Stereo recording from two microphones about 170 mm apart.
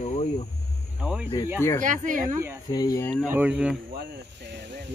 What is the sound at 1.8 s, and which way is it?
Speech, 50° right (ahead or behind).